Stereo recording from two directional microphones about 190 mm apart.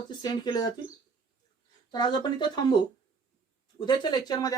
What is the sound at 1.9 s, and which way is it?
Speech, 20° left (ahead or behind).